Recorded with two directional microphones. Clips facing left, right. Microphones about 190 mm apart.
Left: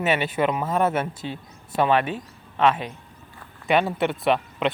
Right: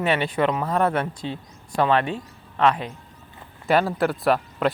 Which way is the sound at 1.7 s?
20° left (ahead or behind).